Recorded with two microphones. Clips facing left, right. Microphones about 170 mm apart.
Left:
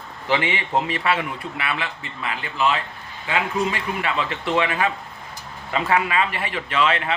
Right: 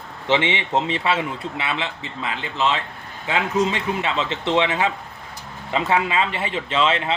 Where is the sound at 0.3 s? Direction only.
25° right (ahead or behind).